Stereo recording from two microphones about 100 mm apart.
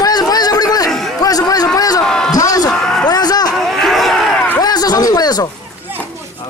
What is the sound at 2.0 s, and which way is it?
Speech, 5° left (ahead or behind).